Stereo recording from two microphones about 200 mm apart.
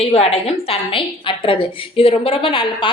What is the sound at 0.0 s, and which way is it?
A woman's voice, 30° left (ahead or behind).